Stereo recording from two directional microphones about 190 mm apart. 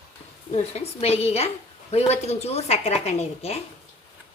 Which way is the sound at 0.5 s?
35° left (ahead or behind).